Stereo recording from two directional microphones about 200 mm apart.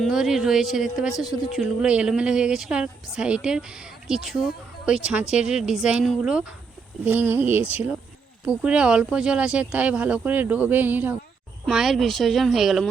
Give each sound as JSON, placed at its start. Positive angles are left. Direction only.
{"t": 0.0, "sound": "a woman's voice", "side_deg": 0}